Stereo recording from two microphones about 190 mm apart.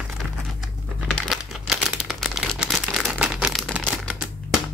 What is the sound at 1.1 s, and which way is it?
Crumpling, centre (ahead or behind).